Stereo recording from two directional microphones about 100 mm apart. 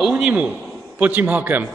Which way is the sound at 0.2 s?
10° right (ahead or behind).